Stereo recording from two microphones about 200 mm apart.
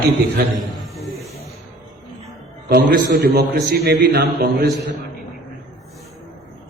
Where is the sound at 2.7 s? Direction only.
50° right (ahead or behind).